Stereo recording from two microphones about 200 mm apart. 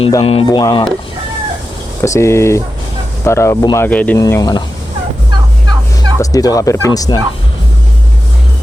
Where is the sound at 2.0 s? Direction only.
15° left (ahead or behind).